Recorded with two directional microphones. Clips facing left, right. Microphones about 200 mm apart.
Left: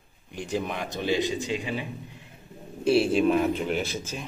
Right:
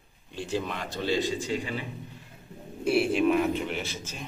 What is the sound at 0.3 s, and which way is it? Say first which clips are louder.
A man's voice: left 1 dB; 15° left (ahead or behind).